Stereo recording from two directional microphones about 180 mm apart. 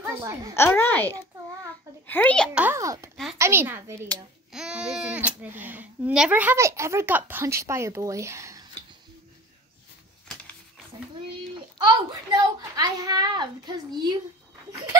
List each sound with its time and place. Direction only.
0.0 s speech: 15° right (ahead or behind)
0.6 s a child's voice: 10° left (ahead or behind)
2.5 s speech: 10° right (ahead or behind)
4.5 s speech: 5° right (ahead or behind)
10.2 s a sound: 5° left (ahead or behind)
11.5 s a child's voice: 20° right (ahead or behind)